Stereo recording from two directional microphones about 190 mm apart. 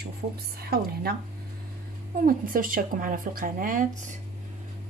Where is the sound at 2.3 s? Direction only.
45° right (ahead or behind).